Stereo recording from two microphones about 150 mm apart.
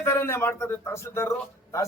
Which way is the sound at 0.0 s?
15° left (ahead or behind).